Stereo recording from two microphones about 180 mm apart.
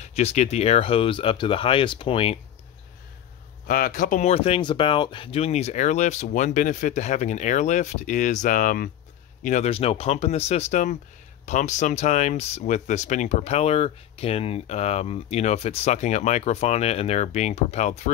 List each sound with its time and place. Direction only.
0.0 s speech: 35° left (ahead or behind)
3.6 s speech: 55° left (ahead or behind)